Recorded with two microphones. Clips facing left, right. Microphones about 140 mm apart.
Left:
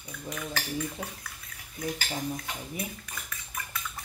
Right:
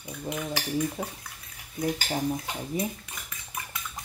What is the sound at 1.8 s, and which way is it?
Cutlery, 35° right (ahead or behind).